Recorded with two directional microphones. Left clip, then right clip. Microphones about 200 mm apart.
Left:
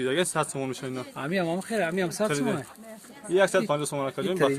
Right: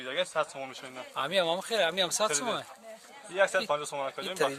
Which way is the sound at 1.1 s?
30° right (ahead or behind).